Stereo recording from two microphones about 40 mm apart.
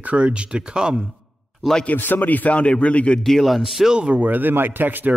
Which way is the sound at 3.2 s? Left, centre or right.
Centre.